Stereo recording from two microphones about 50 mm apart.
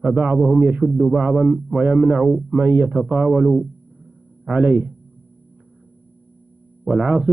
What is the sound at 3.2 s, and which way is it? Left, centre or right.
Speech, right.